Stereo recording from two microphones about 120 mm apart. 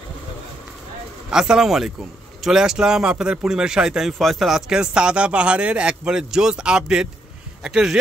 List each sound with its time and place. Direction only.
1.3 s speech: 5° right (ahead or behind)